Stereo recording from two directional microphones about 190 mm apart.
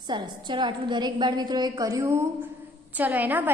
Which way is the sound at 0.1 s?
25° right (ahead or behind).